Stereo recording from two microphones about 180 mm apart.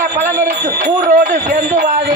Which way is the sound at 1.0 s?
55° right (ahead or behind).